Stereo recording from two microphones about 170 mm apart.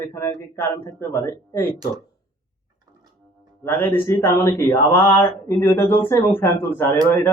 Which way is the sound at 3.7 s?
10° left (ahead or behind).